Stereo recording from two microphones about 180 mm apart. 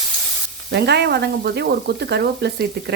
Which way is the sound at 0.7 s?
70° right (ahead or behind).